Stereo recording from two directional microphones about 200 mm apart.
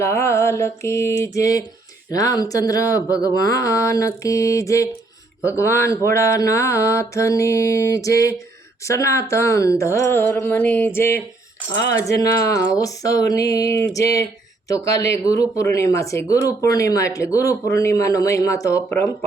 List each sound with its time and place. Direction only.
0.0 s speech: 15° left (ahead or behind)